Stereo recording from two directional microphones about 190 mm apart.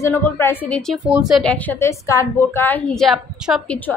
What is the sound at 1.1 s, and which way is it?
A woman's voice, 5° right (ahead or behind).